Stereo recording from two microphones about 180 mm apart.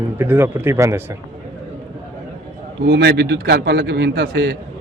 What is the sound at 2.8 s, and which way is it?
A man's voice, 70° right (ahead or behind).